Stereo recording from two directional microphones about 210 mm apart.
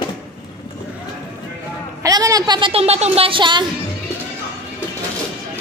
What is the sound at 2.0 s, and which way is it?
A woman's voice, 15° right (ahead or behind).